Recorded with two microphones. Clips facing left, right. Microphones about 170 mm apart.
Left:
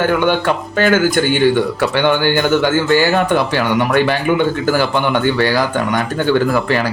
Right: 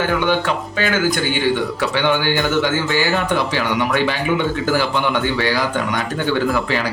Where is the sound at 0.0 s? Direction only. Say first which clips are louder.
Left 4 dB; 50° left (ahead or behind).